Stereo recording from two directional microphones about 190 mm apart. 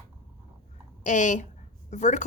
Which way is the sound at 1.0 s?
40° left (ahead or behind).